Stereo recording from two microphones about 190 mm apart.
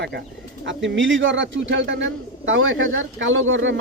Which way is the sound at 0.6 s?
70° right (ahead or behind).